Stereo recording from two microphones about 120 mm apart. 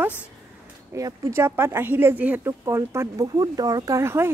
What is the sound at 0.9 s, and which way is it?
A woman's voice, 25° right (ahead or behind).